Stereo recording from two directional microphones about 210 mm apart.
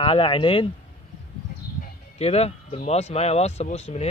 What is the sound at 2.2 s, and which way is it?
Speech, 30° left (ahead or behind).